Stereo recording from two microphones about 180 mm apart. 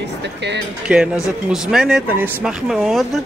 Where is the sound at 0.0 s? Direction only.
70° right (ahead or behind).